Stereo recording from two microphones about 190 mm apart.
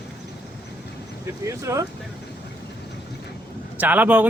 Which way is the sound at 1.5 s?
15° right (ahead or behind).